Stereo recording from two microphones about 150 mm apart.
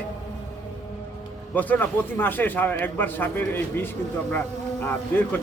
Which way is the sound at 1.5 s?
10° left (ahead or behind).